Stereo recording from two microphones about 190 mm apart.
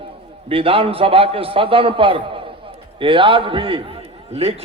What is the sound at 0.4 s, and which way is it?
A man's voice, 30° right (ahead or behind).